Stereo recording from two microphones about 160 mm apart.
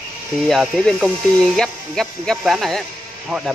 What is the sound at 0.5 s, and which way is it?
Speech, centre (ahead or behind).